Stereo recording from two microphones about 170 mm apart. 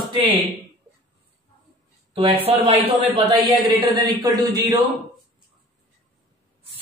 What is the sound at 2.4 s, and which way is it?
Speech, 35° right (ahead or behind).